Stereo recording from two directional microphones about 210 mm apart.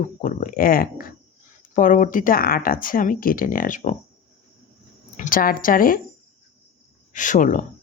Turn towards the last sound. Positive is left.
turn(degrees=40)  # may be behind; listen again after turning